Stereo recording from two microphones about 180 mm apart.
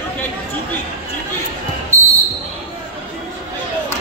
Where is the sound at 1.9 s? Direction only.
15° right (ahead or behind).